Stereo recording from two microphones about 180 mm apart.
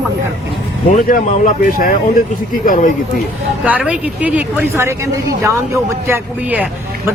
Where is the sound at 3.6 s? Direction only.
5° right (ahead or behind).